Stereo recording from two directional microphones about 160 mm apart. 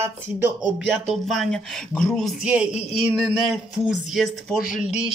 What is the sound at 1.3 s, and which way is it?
Speech, centre (ahead or behind).